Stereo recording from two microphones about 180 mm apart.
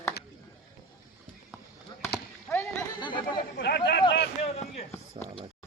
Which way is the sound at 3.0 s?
25° left (ahead or behind).